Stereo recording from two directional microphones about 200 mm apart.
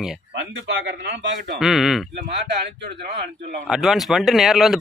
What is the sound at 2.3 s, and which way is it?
Speech, 55° right (ahead or behind).